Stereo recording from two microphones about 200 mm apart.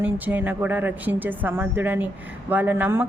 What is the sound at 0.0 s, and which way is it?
A woman's voice, 10° right (ahead or behind).